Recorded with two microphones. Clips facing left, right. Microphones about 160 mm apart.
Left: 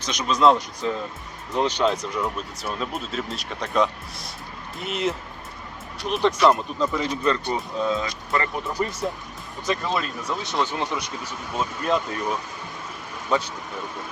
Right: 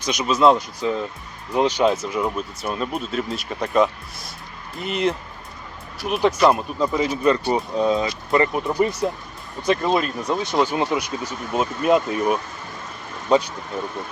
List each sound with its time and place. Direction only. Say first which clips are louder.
0.0 s speech: right 2 dB; 10° right (ahead or behind)